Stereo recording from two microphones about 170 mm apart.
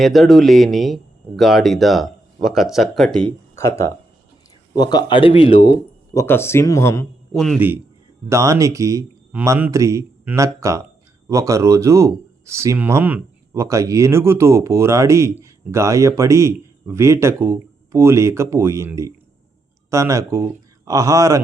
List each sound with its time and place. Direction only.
0.0 s speech: centre (ahead or behind)
3.5 s speech: 15° left (ahead or behind)
6.1 s speech: 15° left (ahead or behind)
7.3 s speech: centre (ahead or behind)
8.3 s speech: 15° right (ahead or behind)